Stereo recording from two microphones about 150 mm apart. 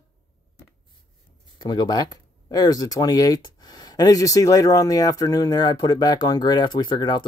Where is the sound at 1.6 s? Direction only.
30° left (ahead or behind).